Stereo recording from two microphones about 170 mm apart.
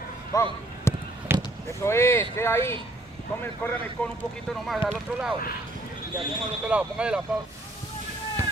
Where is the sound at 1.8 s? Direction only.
15° left (ahead or behind).